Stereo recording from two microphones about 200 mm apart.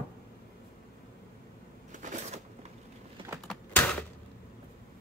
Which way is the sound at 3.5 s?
5° left (ahead or behind).